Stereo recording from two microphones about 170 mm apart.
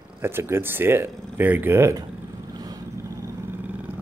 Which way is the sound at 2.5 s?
20° right (ahead or behind).